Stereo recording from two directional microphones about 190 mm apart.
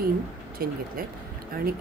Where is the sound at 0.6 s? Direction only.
50° right (ahead or behind).